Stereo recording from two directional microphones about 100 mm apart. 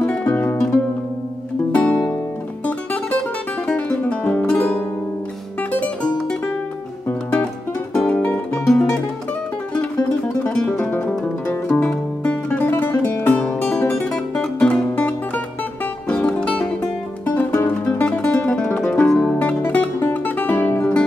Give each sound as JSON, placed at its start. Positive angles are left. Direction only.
{"t": 0.0, "sound": "music", "side_deg": 15}
{"t": 10.4, "sound": "music", "side_deg": 15}